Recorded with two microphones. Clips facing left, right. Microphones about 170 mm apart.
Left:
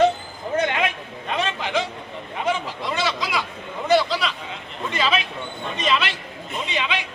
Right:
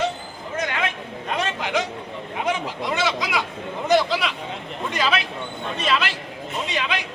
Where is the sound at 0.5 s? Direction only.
30° left (ahead or behind).